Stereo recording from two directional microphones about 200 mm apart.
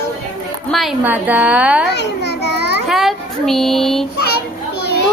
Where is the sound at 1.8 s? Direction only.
60° left (ahead or behind).